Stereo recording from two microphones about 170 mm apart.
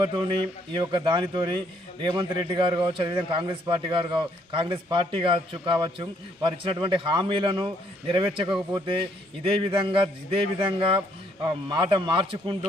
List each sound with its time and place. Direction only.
0.7 s a man's voice: 25° right (ahead or behind)